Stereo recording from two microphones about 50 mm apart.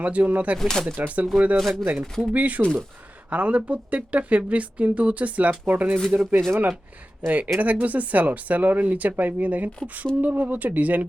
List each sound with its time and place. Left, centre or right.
0.0 s speech: right
0.6 s speech: centre
0.9 s speech: right
1.5 s speech: centre
2.3 s speech: right